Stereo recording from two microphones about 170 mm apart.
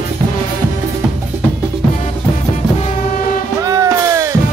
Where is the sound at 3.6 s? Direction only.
20° right (ahead or behind).